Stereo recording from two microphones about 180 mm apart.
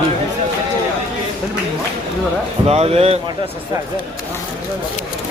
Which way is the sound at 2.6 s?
35° right (ahead or behind).